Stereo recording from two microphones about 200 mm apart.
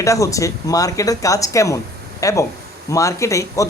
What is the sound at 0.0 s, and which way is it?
Speech, 15° left (ahead or behind).